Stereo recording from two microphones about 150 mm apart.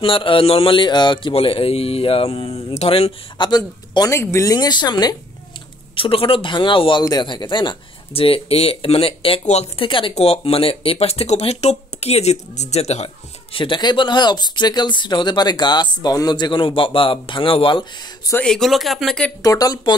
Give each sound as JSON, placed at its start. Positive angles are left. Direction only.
{"t": 0.0, "sound": "a man's voice", "side_deg": 35}
{"t": 18.3, "sound": "speech", "side_deg": 5}
{"t": 19.4, "sound": "speech", "side_deg": 25}